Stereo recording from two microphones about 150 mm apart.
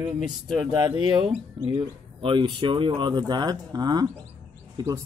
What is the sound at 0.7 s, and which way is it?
Speech, 30° right (ahead or behind).